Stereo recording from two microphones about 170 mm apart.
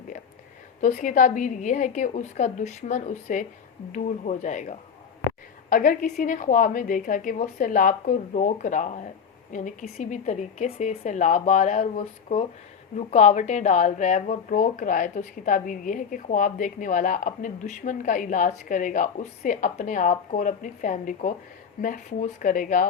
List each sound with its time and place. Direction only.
0.8 s speech: 50° left (ahead or behind)